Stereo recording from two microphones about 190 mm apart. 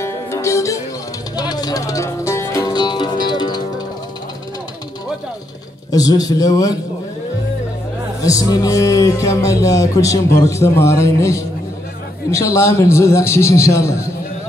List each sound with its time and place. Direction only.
0.0 s music: 15° left (ahead or behind)
5.9 s a man's voice: 20° left (ahead or behind)
8.2 s speech: 20° left (ahead or behind)